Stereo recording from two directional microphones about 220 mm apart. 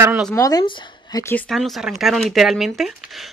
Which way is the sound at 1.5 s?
Centre (ahead or behind).